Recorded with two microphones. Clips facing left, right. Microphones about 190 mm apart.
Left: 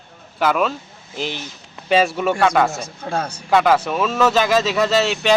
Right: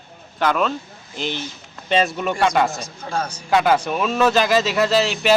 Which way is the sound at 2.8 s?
60° left (ahead or behind).